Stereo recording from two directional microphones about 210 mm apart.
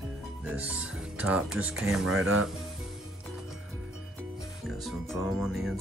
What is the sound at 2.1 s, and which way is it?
Speech, 75° right (ahead or behind).